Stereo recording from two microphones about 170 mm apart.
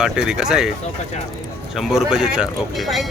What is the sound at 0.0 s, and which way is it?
Speech, 5° right (ahead or behind).